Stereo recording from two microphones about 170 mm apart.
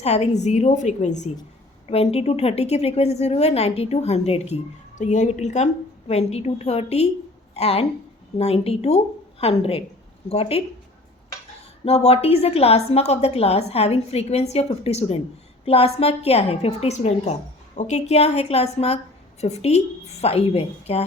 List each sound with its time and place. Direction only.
0.0 s a woman's voice: 40° left (ahead or behind)
11.9 s a woman's voice: 35° left (ahead or behind)